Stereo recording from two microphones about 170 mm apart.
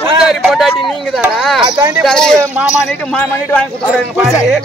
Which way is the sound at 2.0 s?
5° left (ahead or behind).